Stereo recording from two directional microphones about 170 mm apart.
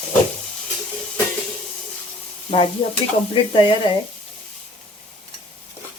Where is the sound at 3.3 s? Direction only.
30° left (ahead or behind).